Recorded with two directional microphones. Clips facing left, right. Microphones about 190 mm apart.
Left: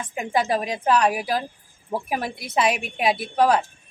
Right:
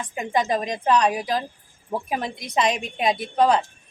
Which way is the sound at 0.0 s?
10° left (ahead or behind).